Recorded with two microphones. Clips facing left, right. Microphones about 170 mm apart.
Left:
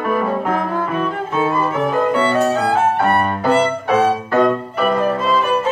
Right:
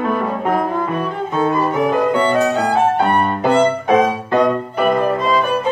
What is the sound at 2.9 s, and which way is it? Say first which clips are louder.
Violin: right 1 dB; 20° right (ahead or behind).